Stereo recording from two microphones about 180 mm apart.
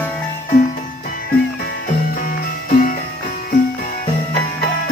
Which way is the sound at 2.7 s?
45° left (ahead or behind).